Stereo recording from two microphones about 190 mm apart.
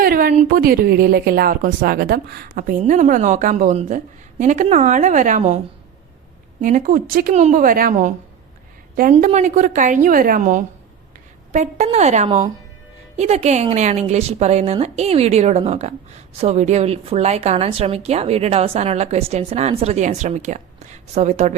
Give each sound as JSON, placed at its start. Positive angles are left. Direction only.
{"t": 0.0, "sound": "a sound", "side_deg": -50}
{"t": 0.4, "sound": "speech", "side_deg": -50}
{"t": 6.6, "sound": "a woman's voice", "side_deg": -45}